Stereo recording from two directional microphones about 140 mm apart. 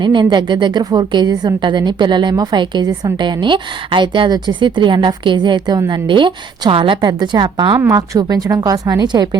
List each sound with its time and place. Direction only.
0.0 s a woman's voice: 30° right (ahead or behind)
7.8 s a woman's voice: 25° right (ahead or behind)